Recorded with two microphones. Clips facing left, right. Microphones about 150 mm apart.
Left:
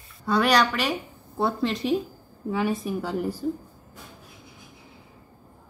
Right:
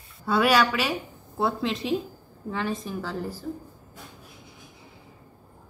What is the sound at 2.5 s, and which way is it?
Speech, 10° left (ahead or behind).